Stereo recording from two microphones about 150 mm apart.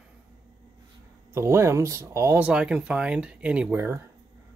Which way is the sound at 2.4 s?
5° right (ahead or behind).